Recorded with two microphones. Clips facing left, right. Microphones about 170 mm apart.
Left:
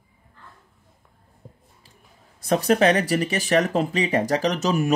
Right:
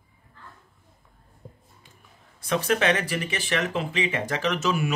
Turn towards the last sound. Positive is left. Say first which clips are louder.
# left 4 dB
turn(degrees=40)  # may be behind; listen again after turning